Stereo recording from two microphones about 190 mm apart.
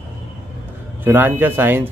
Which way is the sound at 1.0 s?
10° right (ahead or behind).